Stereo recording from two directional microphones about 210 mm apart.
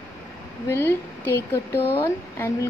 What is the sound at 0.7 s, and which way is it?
A woman's voice, 10° left (ahead or behind).